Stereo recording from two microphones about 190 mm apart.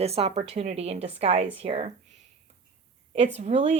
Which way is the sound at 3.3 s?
35° right (ahead or behind).